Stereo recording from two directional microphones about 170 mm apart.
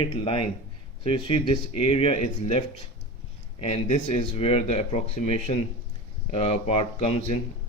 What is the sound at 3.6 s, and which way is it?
Speech, 40° left (ahead or behind).